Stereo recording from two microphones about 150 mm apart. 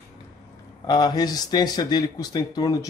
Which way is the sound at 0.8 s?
25° left (ahead or behind).